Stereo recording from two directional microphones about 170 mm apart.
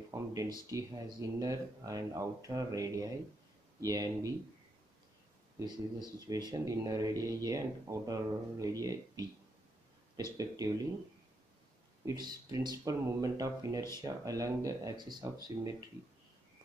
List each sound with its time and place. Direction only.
0.1 s speech: 20° right (ahead or behind)
5.6 s speech: 25° right (ahead or behind)
10.3 s speech: 20° right (ahead or behind)
12.0 s speech: 20° right (ahead or behind)